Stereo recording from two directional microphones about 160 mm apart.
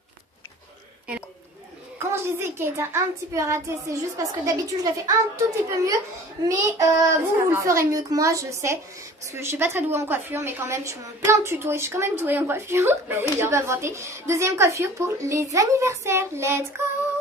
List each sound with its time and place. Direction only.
2.0 s a woman's voice: 15° right (ahead or behind)